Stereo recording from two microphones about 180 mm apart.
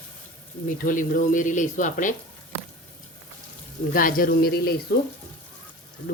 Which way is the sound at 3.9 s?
50° left (ahead or behind).